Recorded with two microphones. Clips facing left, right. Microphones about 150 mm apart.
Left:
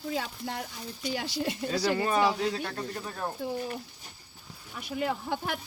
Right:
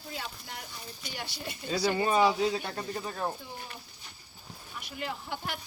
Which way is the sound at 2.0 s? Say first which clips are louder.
Right 1 dB; 10° right (ahead or behind).